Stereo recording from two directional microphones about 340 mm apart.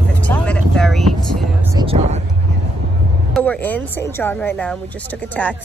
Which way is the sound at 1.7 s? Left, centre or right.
Centre.